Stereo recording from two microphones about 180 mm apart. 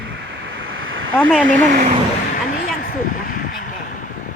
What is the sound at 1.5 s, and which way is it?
Speech, 45° right (ahead or behind).